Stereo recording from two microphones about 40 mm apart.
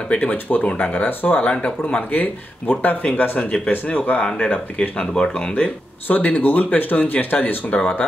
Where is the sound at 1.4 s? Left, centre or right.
Left.